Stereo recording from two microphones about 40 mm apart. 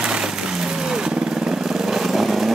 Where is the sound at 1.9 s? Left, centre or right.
Centre.